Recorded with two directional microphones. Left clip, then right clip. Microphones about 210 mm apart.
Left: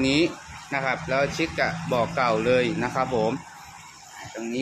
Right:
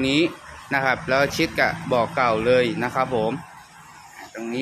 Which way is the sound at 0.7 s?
20° right (ahead or behind).